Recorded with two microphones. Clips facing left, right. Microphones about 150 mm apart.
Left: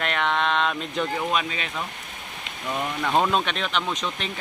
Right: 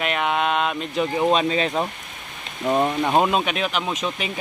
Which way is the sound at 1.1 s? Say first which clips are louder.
Right 7 dB; 30° right (ahead or behind).